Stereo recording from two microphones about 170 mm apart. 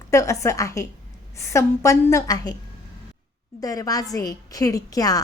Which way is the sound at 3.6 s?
20° left (ahead or behind).